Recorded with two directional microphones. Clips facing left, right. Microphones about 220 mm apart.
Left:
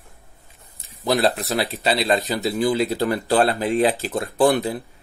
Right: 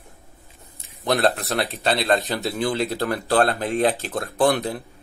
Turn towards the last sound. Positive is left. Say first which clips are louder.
# left 2 dB
turn(degrees=0)  # may be behind; listen again after turning